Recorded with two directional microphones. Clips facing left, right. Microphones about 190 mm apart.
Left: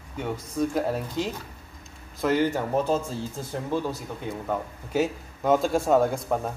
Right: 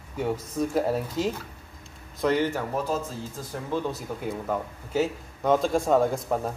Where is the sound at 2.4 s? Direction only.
20° left (ahead or behind).